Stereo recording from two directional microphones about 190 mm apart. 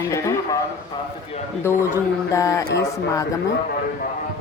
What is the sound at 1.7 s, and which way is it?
Speech, 10° left (ahead or behind).